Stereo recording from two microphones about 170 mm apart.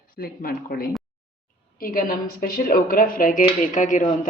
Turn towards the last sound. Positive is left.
turn(degrees=50)  # may be behind; listen again after turning